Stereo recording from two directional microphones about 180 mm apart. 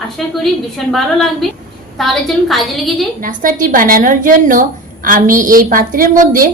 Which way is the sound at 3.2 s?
50° right (ahead or behind).